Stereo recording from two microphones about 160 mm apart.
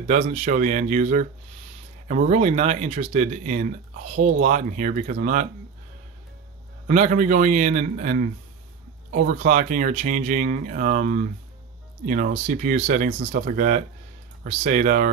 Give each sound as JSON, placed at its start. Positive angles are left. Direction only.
{"t": 0.1, "sound": "speech", "side_deg": -50}
{"t": 6.9, "sound": "speech", "side_deg": -50}